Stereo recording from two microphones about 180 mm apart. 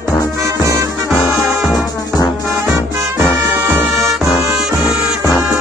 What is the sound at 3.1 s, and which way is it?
Music, 15° right (ahead or behind).